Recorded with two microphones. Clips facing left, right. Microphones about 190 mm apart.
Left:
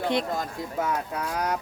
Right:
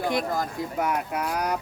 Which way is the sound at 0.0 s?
25° left (ahead or behind).